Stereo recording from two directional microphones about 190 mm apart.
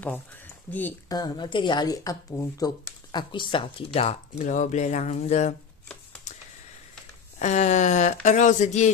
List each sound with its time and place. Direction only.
0.7 s speech: 10° left (ahead or behind)
1.1 s speech: 20° left (ahead or behind); by 5.5 s 35° left (ahead or behind)
7.3 s speech: 40° left (ahead or behind)